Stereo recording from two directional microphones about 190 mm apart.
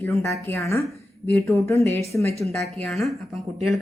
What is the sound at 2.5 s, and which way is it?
Speech, 35° right (ahead or behind).